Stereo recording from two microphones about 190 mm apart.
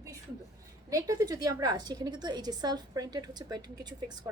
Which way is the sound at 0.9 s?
15° right (ahead or behind).